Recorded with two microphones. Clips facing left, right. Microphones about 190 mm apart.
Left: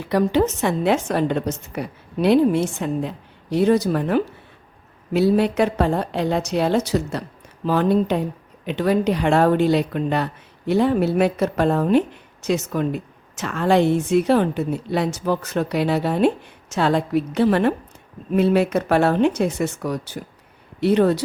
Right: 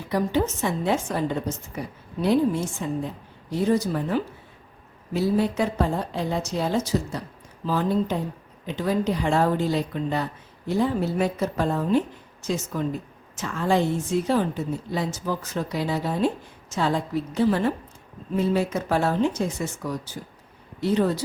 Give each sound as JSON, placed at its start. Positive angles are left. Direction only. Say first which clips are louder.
{"t": 0.1, "sound": "speech", "louder": "left 5 dB", "side_deg": 70}